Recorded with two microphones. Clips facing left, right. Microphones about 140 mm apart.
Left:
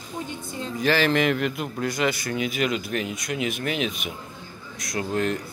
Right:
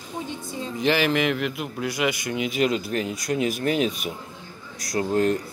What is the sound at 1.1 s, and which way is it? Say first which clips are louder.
A man's voice: left 1 dB; 5° right (ahead or behind).